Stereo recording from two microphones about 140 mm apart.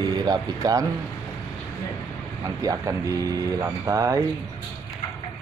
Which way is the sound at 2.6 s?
25° right (ahead or behind).